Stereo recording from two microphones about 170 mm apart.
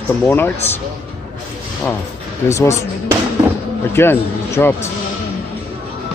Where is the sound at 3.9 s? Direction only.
15° left (ahead or behind).